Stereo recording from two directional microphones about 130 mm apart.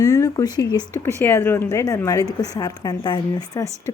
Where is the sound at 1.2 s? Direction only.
20° left (ahead or behind).